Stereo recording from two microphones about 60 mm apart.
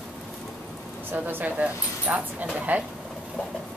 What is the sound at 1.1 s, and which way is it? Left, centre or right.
Speech, right.